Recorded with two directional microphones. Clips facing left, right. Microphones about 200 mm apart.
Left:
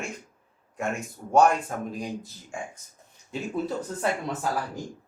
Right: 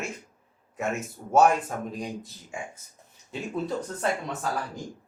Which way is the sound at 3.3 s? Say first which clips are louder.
Left 1 dB; 5° left (ahead or behind).